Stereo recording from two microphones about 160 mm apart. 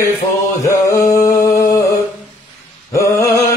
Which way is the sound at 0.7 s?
20° left (ahead or behind).